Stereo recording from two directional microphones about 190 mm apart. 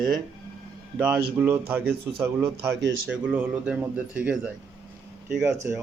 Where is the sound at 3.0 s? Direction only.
5° right (ahead or behind).